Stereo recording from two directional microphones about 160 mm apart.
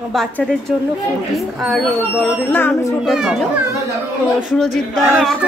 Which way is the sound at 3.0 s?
5° right (ahead or behind).